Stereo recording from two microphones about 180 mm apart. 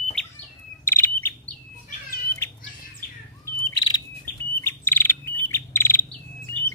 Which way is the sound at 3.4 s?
20° left (ahead or behind).